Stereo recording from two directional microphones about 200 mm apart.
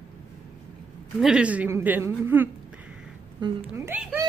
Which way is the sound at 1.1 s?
5° right (ahead or behind).